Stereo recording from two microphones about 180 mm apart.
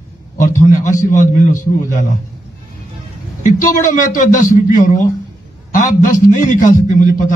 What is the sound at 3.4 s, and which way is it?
A man's voice, 45° left (ahead or behind).